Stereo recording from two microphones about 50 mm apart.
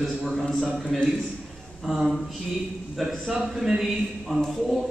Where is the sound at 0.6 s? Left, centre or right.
Centre.